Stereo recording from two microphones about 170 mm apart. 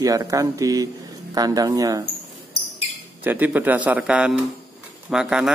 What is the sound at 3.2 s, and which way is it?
A man's voice, 10° right (ahead or behind).